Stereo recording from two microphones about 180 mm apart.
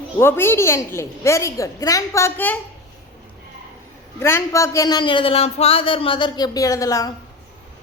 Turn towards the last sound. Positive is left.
turn(degrees=20)  # may be behind; listen again after turning